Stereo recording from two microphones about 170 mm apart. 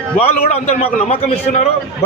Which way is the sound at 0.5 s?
40° left (ahead or behind).